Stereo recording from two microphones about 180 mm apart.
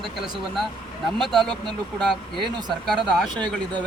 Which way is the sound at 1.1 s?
Centre (ahead or behind).